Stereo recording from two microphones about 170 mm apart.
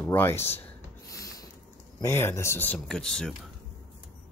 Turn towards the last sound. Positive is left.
turn(degrees=5)  # may be behind; listen again after turning